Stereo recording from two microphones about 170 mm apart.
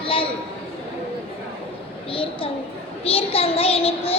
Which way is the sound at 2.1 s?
30° left (ahead or behind).